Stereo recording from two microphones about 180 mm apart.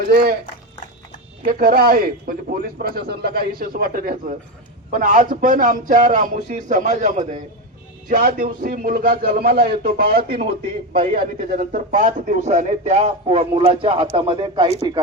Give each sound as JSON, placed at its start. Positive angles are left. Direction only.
{"t": 0.1, "sound": "a man's voice", "side_deg": -60}
{"t": 1.5, "sound": "a man's voice", "side_deg": -55}
{"t": 11.1, "sound": "speech", "side_deg": -55}